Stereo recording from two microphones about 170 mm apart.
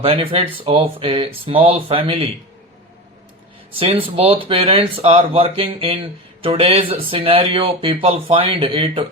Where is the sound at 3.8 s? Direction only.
35° right (ahead or behind).